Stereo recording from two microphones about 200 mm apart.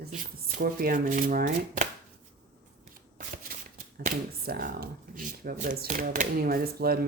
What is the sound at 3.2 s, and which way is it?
Shuffling cards, 45° right (ahead or behind).